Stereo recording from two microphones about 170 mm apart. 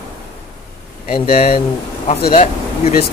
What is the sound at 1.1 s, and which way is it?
Speech, 35° left (ahead or behind).